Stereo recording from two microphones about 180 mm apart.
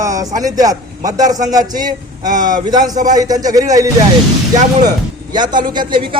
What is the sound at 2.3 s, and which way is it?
Speech, 45° right (ahead or behind).